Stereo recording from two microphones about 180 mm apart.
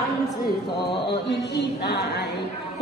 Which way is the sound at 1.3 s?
70° left (ahead or behind).